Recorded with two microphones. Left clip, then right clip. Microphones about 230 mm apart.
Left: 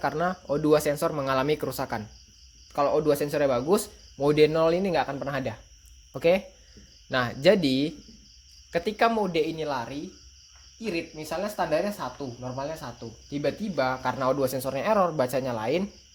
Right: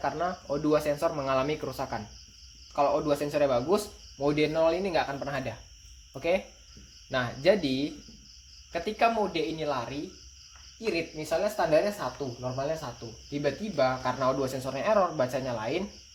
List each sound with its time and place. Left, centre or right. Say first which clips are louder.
0.0 s speech: left 3 dB; left
10.9 s speech: right 2 dB; left
13.3 s speech: left 2 dB; left